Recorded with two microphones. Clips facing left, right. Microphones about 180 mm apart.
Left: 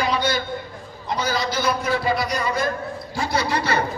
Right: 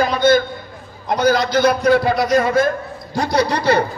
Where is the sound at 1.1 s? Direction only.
60° right (ahead or behind).